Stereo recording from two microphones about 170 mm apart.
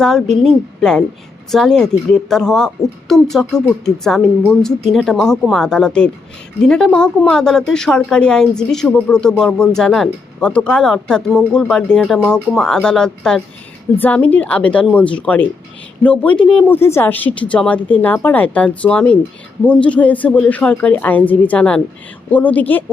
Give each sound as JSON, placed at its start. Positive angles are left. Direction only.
{"t": 0.0, "sound": "a woman's voice", "side_deg": 5}